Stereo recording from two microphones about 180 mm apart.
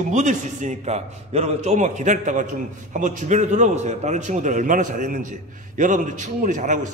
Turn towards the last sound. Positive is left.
turn(degrees=-45)  # may be behind; listen again after turning